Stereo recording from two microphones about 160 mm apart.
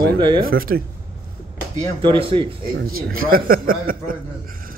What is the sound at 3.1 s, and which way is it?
A man's voice, 65° right (ahead or behind).